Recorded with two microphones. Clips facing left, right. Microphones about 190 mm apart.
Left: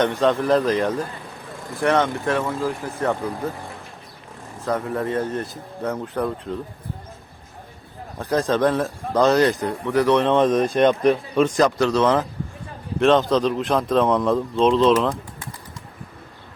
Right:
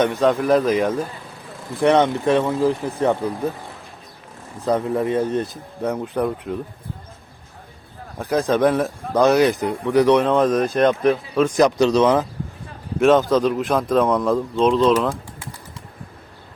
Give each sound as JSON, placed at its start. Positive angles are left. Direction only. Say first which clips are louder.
{"t": 0.0, "sound": "a man's voice", "louder": "right 1 dB", "side_deg": -5}
{"t": 1.8, "sound": "speech", "louder": "right 4 dB", "side_deg": -20}
{"t": 4.6, "sound": "a man's voice", "louder": "right 4 dB", "side_deg": -20}
{"t": 8.2, "sound": "a man's voice", "louder": "right 2 dB", "side_deg": -10}
{"t": 10.2, "sound": "speech", "louder": "even", "side_deg": 0}
{"t": 11.5, "sound": "a man's voice", "louder": "right 3 dB", "side_deg": -15}